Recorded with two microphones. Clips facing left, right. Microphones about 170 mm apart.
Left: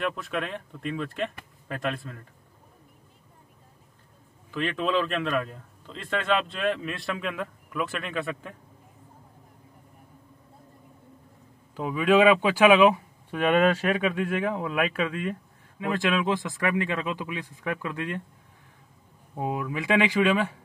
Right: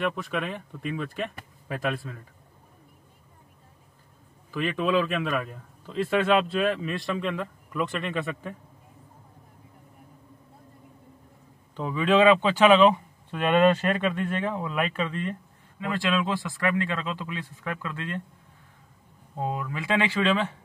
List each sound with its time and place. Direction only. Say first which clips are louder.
0.0 s a man's voice: right 1 dB; centre (ahead or behind)
4.5 s a man's voice: right 1 dB; 5° right (ahead or behind)
11.7 s speech: left 1 dB; 10° left (ahead or behind)
19.3 s speech: left 1 dB; 15° left (ahead or behind)